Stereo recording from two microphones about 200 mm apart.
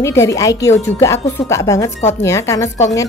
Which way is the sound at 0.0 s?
15° left (ahead or behind).